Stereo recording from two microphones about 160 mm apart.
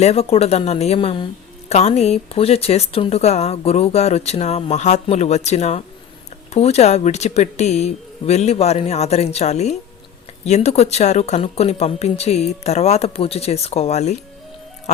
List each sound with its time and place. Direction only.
0.0 s a woman's voice: 40° left (ahead or behind)
1.7 s a woman's voice: 40° left (ahead or behind)